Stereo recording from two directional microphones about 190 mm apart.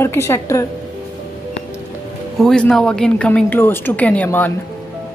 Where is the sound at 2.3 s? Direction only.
5° left (ahead or behind).